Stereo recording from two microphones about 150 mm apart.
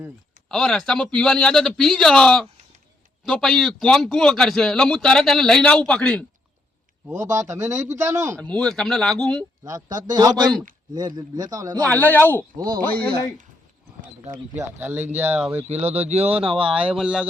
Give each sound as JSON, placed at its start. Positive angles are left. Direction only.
{"t": 0.4, "sound": "a man's voice", "side_deg": 5}
{"t": 7.1, "sound": "a man's voice", "side_deg": -20}
{"t": 8.4, "sound": "a man's voice", "side_deg": 5}
{"t": 9.6, "sound": "a man's voice", "side_deg": -25}
{"t": 11.9, "sound": "speech", "side_deg": 10}
{"t": 14.6, "sound": "speech", "side_deg": -15}
{"t": 15.7, "sound": "speech", "side_deg": -45}
{"t": 16.7, "sound": "a man's voice", "side_deg": -5}